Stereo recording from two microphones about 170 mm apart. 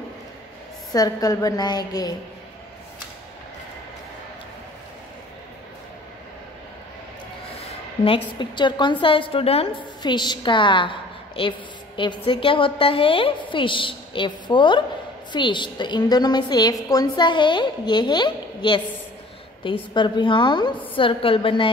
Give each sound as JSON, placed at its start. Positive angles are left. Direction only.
{"t": 0.9, "sound": "a woman's voice", "side_deg": 20}
{"t": 7.6, "sound": "a sound", "side_deg": 35}
{"t": 8.4, "sound": "a woman's voice", "side_deg": 25}